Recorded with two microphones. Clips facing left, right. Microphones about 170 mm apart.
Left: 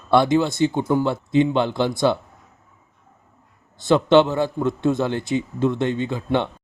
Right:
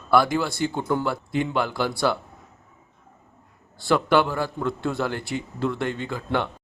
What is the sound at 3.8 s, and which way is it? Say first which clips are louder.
A man's voice: left 5 dB; 25° left (ahead or behind).